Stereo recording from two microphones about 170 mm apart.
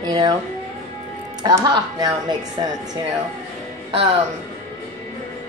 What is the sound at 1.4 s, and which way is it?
Speech, 25° right (ahead or behind).